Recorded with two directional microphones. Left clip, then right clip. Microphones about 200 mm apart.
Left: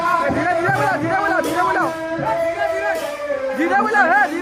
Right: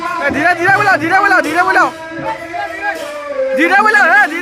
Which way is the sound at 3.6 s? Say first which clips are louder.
Right 7 dB; 25° right (ahead or behind).